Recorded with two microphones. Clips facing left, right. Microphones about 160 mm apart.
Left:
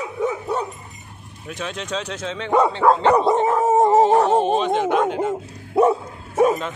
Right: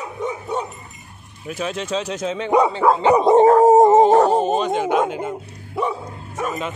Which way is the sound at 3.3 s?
35° right (ahead or behind).